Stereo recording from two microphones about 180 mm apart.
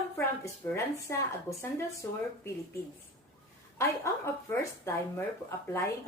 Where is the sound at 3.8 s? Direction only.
15° left (ahead or behind).